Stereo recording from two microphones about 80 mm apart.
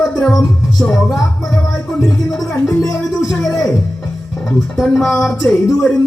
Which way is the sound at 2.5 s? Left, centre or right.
Left.